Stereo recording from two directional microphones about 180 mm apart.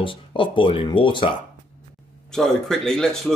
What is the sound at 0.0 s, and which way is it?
Speech, 30° left (ahead or behind).